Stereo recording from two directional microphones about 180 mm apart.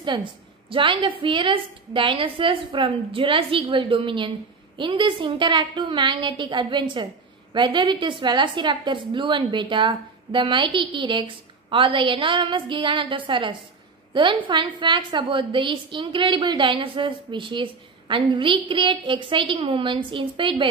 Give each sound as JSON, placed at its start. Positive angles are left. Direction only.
{"t": 0.0, "sound": "a woman's voice", "side_deg": -25}